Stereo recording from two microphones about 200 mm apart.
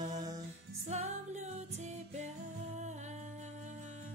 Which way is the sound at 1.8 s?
35° right (ahead or behind).